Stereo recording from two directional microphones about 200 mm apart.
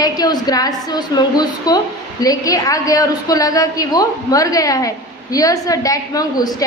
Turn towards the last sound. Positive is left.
turn(degrees=20)  # may be behind; listen again after turning